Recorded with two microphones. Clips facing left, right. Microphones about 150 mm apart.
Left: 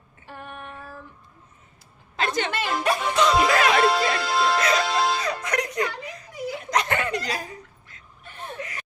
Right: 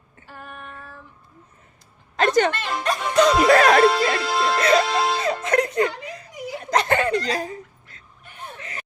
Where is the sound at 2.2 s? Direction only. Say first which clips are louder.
Right 8 dB; 45° right (ahead or behind).